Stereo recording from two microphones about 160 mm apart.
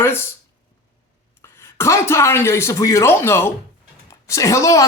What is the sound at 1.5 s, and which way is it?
A woman's voice, 15° left (ahead or behind).